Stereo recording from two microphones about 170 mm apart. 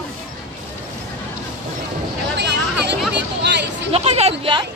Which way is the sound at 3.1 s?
90° right.